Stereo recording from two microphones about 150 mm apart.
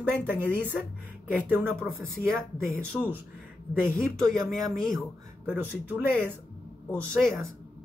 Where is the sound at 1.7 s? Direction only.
5° left (ahead or behind).